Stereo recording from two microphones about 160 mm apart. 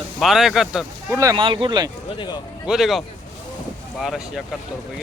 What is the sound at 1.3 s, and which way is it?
Speech, 30° right (ahead or behind).